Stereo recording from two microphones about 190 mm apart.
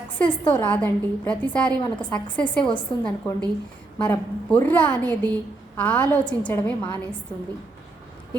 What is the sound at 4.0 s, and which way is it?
A woman's voice, 10° left (ahead or behind).